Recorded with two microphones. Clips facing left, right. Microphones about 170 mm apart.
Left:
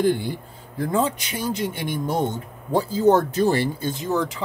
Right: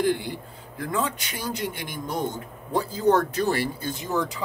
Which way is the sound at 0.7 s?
25° left (ahead or behind).